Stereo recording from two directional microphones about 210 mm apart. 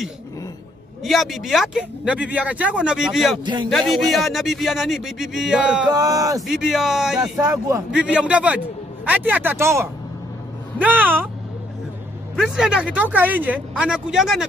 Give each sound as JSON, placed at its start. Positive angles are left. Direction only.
{"t": 1.0, "sound": "speech", "side_deg": 0}
{"t": 5.9, "sound": "speech", "side_deg": -15}
{"t": 6.4, "sound": "speech", "side_deg": 0}
{"t": 12.4, "sound": "speech", "side_deg": 0}